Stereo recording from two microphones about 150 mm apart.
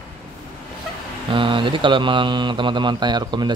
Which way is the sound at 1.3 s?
35° right (ahead or behind).